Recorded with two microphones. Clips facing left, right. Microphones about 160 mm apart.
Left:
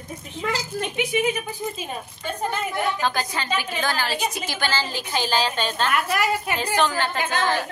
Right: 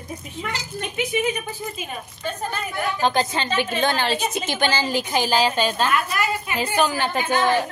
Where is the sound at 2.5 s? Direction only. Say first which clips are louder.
Left 6 dB; 20° left (ahead or behind).